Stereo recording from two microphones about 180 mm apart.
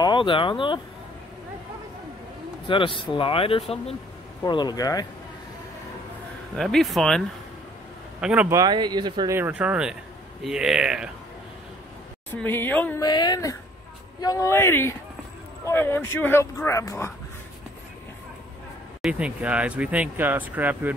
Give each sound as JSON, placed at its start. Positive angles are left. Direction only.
{"t": 0.0, "sound": "speech", "side_deg": 25}
{"t": 2.7, "sound": "speech", "side_deg": 30}
{"t": 6.5, "sound": "speech", "side_deg": 0}
{"t": 8.2, "sound": "speech", "side_deg": -5}
{"t": 8.5, "sound": "speech", "side_deg": -25}
{"t": 9.3, "sound": "speech", "side_deg": -10}
{"t": 12.3, "sound": "speech", "side_deg": 10}
{"t": 13.0, "sound": "speech", "side_deg": 20}
{"t": 19.0, "sound": "speech", "side_deg": -5}